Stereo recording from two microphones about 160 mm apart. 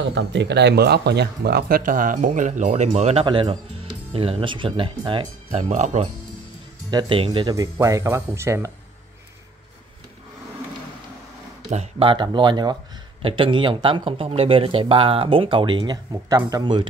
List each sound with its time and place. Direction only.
0.1 s speech: 90° right; by 6.0 s 45° right (ahead or behind)
6.9 s speech: 30° right (ahead or behind)
11.7 s speech: 35° right (ahead or behind)